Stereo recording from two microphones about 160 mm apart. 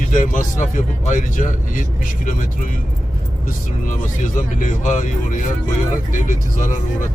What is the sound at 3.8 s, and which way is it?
A man's voice, 55° left (ahead or behind).